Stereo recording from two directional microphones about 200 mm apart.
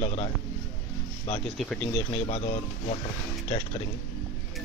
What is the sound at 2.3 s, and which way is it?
Speech, 30° left (ahead or behind).